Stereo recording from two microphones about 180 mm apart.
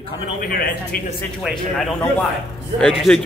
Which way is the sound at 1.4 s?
Centre (ahead or behind).